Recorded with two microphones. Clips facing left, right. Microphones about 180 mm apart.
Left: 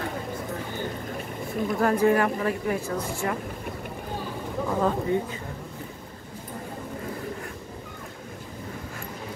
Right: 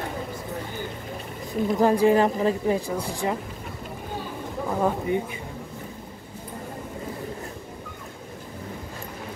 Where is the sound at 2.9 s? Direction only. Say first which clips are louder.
Right 2 dB; 15° right (ahead or behind).